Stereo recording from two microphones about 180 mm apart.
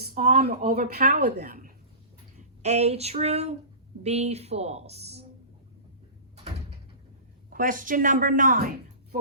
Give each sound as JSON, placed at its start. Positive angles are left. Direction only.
{"t": 0.1, "sound": "a woman's voice", "side_deg": -40}
{"t": 0.7, "sound": "a woman's voice", "side_deg": -60}
{"t": 2.6, "sound": "a woman's voice", "side_deg": -35}
{"t": 7.5, "sound": "a woman's voice", "side_deg": -50}